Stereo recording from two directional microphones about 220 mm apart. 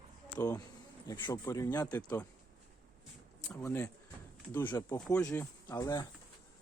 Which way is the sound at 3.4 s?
10° left (ahead or behind).